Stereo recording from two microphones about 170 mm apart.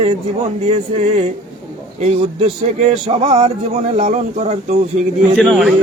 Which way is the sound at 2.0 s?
40° right (ahead or behind).